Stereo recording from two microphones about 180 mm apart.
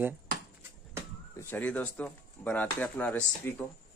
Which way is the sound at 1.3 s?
10° left (ahead or behind).